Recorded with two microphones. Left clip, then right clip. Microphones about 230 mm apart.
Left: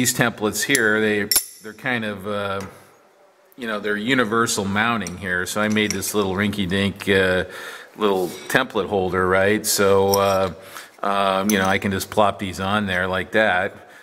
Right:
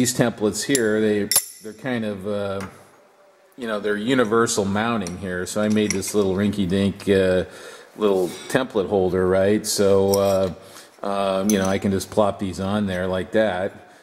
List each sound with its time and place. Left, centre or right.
0.2 s speech: centre
8.8 s speech: left
9.1 s speech: centre
11.0 s speech: centre